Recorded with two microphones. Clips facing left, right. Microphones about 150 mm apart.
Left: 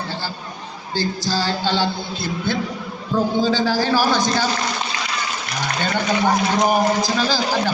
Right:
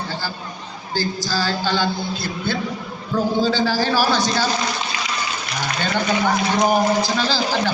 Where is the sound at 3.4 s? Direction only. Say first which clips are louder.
Even; 15° left (ahead or behind).